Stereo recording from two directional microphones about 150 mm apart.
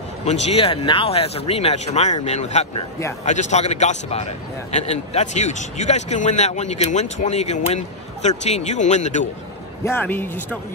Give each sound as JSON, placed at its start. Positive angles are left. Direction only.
{"t": 0.2, "sound": "speech", "side_deg": 45}
{"t": 9.8, "sound": "speech", "side_deg": 15}